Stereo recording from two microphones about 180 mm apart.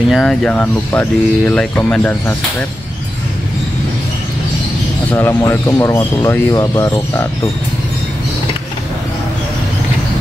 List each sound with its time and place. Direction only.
0.1 s speech: 5° left (ahead or behind)
5.1 s speech: 15° left (ahead or behind)